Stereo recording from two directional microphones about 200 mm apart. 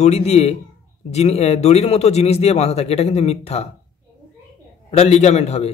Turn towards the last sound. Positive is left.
turn(degrees=35)  # may be behind; listen again after turning